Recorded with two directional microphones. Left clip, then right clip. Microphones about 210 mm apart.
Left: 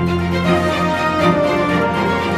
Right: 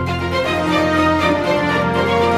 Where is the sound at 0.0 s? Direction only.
Centre (ahead or behind).